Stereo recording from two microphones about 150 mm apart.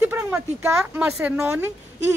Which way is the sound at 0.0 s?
15° right (ahead or behind).